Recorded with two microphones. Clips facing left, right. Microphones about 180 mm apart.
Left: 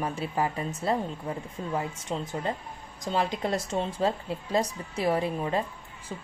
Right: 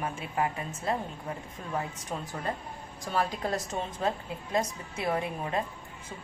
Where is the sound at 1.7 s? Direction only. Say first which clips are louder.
Left 2 dB; 20° left (ahead or behind).